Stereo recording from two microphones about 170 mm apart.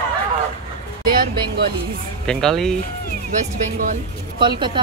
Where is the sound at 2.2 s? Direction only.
5° left (ahead or behind).